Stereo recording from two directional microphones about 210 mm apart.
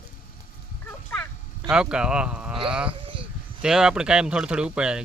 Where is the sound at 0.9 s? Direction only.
10° left (ahead or behind).